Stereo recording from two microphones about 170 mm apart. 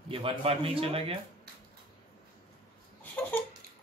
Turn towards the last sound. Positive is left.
turn(degrees=10)  # may be behind; listen again after turning